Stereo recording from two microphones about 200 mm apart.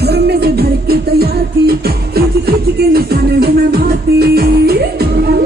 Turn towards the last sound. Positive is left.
turn(degrees=-50)  # may be behind; listen again after turning